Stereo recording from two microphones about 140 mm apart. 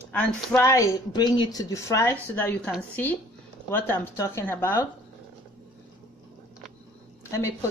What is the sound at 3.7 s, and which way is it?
Speech, 15° left (ahead or behind).